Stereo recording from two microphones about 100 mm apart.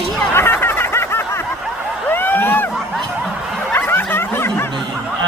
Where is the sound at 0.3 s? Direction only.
25° left (ahead or behind).